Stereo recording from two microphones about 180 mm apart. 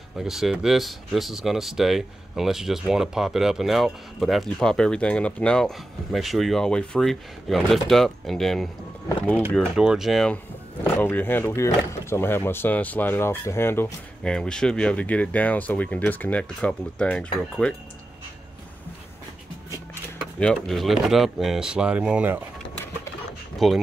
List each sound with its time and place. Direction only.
0.2 s speech: centre (ahead or behind)
19.9 s speech: 5° left (ahead or behind)
23.6 s speech: centre (ahead or behind)